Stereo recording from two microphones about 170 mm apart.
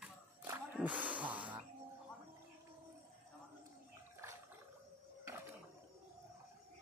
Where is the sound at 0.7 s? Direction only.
10° right (ahead or behind).